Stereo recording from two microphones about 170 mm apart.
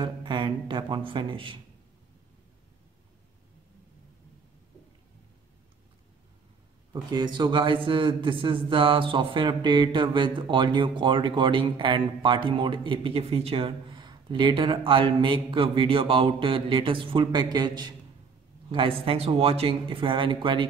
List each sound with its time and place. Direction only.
0.0 s a man's voice: 25° right (ahead or behind)
6.9 s a man's voice: 25° right (ahead or behind)